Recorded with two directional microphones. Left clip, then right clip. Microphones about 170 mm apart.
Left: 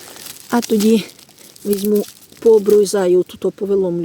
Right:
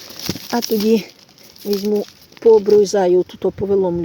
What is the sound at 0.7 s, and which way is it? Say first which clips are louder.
Speech: left 1 dB; 35° left (ahead or behind).